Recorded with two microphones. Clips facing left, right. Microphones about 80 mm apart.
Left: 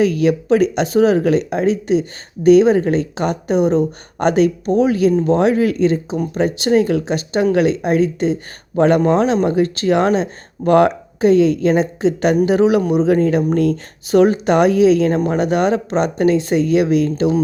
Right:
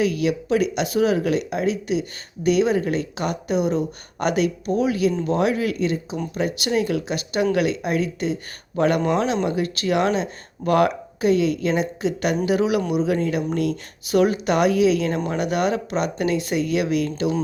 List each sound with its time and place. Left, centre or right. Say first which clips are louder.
0.0 s speech: left 6 dB; left